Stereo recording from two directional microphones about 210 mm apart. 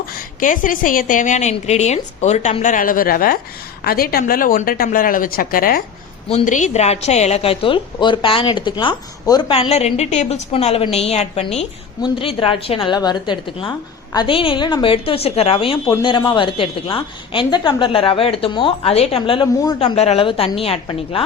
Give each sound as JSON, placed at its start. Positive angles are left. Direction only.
{"t": 0.1, "sound": "a woman's voice", "side_deg": 40}